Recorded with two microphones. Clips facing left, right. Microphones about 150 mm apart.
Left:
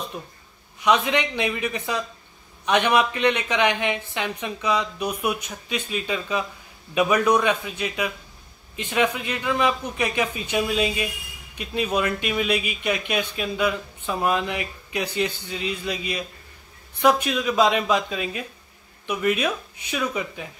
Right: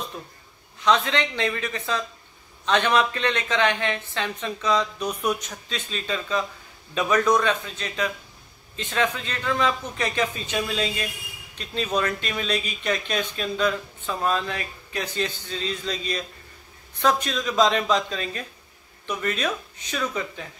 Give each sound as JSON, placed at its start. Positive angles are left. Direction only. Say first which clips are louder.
{"t": 0.2, "sound": "a man's voice", "louder": "left 2 dB", "side_deg": 20}